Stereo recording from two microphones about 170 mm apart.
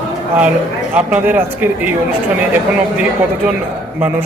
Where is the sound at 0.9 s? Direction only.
10° right (ahead or behind).